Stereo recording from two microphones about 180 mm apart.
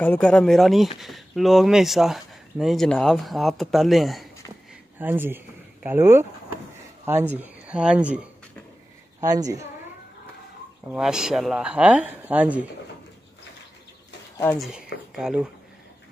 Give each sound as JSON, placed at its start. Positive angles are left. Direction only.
{"t": 0.0, "sound": "speech", "side_deg": 10}
{"t": 4.9, "sound": "speech", "side_deg": -10}
{"t": 9.2, "sound": "a woman's voice", "side_deg": -20}
{"t": 10.9, "sound": "speech", "side_deg": -5}
{"t": 15.1, "sound": "speech", "side_deg": -5}